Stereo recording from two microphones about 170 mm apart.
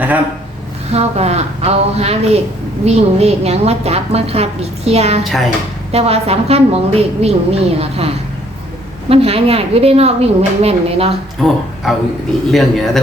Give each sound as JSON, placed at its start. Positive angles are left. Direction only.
{"t": 0.9, "sound": "a woman's voice", "side_deg": -40}
{"t": 5.2, "sound": "speech", "side_deg": 0}
{"t": 5.9, "sound": "a woman's voice", "side_deg": -35}
{"t": 11.4, "sound": "speech", "side_deg": 0}